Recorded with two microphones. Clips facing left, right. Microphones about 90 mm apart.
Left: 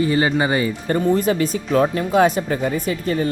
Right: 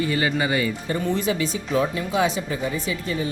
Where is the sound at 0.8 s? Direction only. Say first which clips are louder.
Left 6 dB; 45° left (ahead or behind).